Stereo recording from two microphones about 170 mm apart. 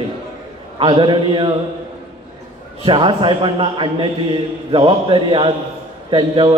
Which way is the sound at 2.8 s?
30° right (ahead or behind).